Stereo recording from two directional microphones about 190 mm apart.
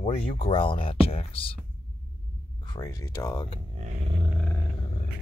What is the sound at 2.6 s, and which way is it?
Speech, 20° left (ahead or behind).